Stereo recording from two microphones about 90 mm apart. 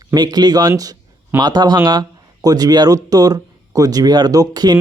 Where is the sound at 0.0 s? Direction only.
45° right (ahead or behind).